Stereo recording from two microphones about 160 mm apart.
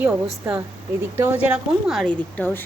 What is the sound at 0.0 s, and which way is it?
A woman's voice, 5° right (ahead or behind).